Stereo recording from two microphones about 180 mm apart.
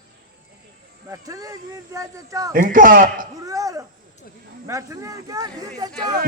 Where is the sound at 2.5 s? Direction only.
50° right (ahead or behind).